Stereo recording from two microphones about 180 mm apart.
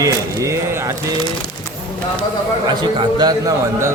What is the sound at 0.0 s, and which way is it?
Speech, 15° right (ahead or behind).